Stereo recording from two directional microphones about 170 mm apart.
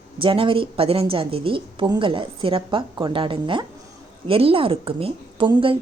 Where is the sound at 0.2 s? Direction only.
30° right (ahead or behind).